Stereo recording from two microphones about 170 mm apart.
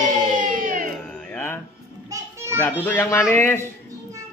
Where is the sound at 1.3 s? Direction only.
15° left (ahead or behind).